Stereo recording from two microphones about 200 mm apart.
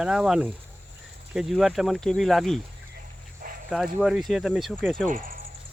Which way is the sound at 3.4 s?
45° right (ahead or behind).